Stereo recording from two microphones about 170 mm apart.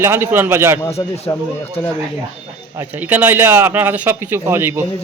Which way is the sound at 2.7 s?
10° right (ahead or behind).